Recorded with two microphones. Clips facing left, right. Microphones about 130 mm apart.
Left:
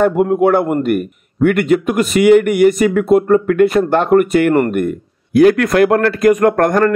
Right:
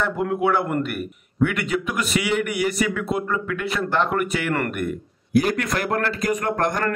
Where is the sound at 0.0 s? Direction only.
50° left (ahead or behind).